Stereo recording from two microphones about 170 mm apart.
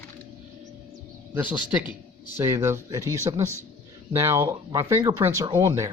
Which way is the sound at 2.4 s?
15° right (ahead or behind).